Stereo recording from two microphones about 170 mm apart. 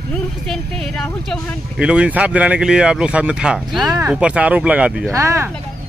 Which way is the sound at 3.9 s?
20° right (ahead or behind).